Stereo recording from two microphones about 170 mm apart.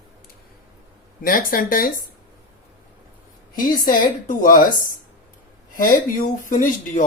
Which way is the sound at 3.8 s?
55° left (ahead or behind).